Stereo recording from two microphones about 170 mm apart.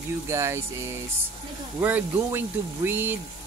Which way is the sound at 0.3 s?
15° right (ahead or behind).